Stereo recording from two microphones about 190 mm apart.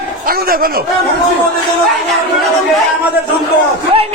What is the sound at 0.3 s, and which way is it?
Speech, 50° right (ahead or behind).